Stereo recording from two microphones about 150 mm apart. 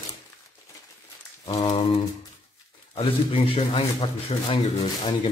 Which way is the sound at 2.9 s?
40° left (ahead or behind).